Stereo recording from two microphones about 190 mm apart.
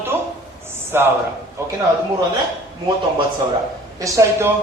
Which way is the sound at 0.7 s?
10° right (ahead or behind).